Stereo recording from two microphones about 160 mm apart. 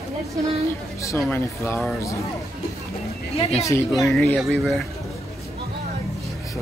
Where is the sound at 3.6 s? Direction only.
20° left (ahead or behind).